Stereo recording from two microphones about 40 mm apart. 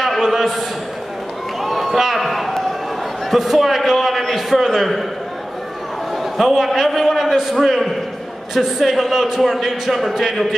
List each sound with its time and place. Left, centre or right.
0.2 s a sound: centre
1.6 s run: centre
3.3 s a man's voice: centre
6.1 s a man's voice: centre